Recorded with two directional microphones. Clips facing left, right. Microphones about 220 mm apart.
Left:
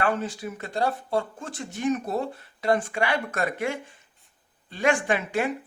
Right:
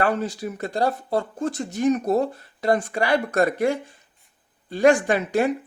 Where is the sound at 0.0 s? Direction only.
40° right (ahead or behind).